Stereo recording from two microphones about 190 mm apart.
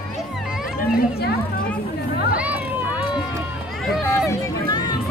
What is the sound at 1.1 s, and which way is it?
Children playing, 55° left (ahead or behind).